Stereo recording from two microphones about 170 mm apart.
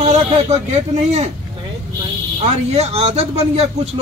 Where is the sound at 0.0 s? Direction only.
40° right (ahead or behind).